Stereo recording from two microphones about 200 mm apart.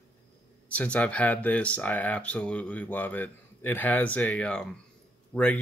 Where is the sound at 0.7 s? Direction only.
5° left (ahead or behind).